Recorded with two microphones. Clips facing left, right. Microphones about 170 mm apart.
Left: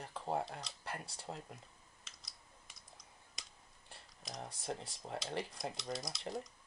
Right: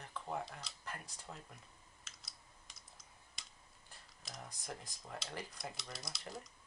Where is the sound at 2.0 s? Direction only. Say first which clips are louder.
Left 1 dB; centre (ahead or behind).